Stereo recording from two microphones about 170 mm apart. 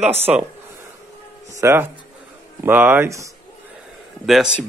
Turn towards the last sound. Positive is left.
turn(degrees=0)  # may be behind; listen again after turning